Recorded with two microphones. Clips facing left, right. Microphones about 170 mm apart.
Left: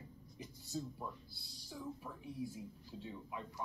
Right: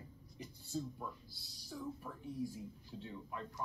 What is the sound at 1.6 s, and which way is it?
Speech, 5° left (ahead or behind).